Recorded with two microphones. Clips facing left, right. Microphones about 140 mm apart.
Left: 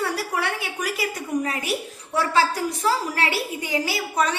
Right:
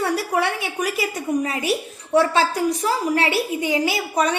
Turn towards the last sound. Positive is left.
turn(degrees=-20)  # may be behind; listen again after turning